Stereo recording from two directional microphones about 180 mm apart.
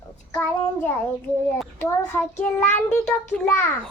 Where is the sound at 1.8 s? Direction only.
10° left (ahead or behind).